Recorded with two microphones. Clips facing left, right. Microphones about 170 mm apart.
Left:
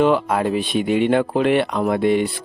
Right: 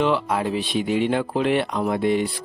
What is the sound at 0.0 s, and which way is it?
Speech, 50° left (ahead or behind).